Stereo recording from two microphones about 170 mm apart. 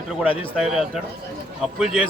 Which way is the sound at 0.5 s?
5° right (ahead or behind).